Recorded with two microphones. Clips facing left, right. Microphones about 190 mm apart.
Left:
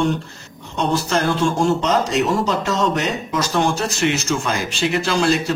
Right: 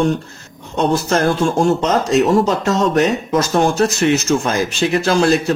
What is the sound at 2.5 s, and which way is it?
Speech, 45° right (ahead or behind).